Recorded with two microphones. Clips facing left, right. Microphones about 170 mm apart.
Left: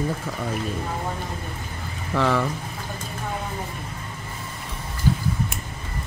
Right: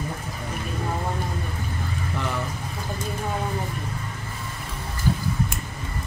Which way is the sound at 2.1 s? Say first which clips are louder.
Left 9 dB; 90° left.